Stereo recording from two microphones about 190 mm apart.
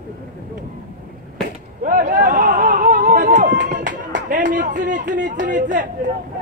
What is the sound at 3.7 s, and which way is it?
Music, 40° right (ahead or behind).